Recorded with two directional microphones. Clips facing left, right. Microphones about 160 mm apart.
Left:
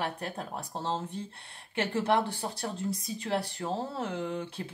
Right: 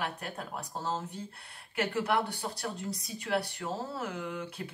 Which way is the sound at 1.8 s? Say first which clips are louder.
Left 2 dB; 30° left (ahead or behind).